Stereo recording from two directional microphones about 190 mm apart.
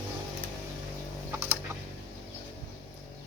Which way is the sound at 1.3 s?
10° right (ahead or behind).